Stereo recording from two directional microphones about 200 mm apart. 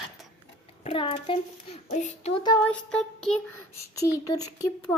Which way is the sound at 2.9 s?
5° left (ahead or behind).